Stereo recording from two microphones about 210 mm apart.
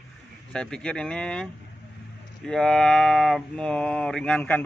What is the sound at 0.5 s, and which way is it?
Speech, 5° left (ahead or behind).